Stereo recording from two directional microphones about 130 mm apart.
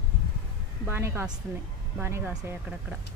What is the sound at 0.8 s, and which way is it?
A woman's voice, 15° right (ahead or behind).